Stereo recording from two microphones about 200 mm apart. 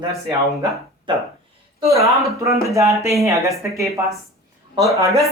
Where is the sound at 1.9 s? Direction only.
15° right (ahead or behind).